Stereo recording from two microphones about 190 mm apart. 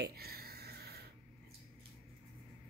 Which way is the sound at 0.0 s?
55° right (ahead or behind).